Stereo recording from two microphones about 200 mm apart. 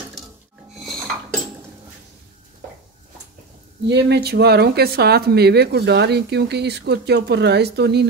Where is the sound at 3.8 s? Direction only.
55° right (ahead or behind).